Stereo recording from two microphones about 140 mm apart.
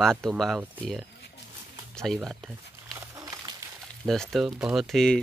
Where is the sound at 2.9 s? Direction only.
25° right (ahead or behind).